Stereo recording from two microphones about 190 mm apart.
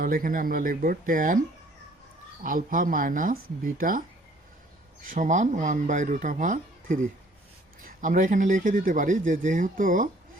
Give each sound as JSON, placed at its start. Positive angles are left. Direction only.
{"t": 0.0, "sound": "speech", "side_deg": -45}
{"t": 2.4, "sound": "speech", "side_deg": -45}
{"t": 5.0, "sound": "speech", "side_deg": -45}